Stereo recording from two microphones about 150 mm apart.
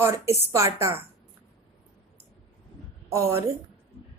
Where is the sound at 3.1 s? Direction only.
20° right (ahead or behind).